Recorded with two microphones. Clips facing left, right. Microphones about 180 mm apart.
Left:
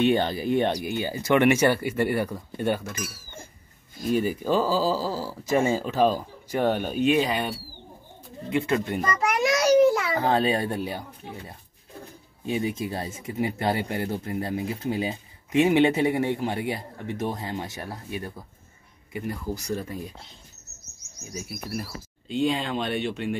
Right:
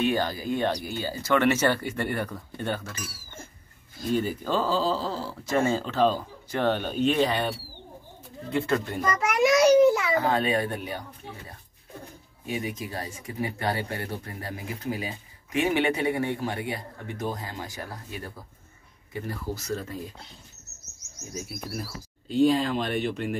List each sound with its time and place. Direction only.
0.0 s speech: 25° left (ahead or behind); by 7.4 s 10° left (ahead or behind)
8.5 s speech: 15° left (ahead or behind)
10.1 s a child's voice: 30° left (ahead or behind); by 20.0 s 15° left (ahead or behind)
21.3 s speech: 5° left (ahead or behind)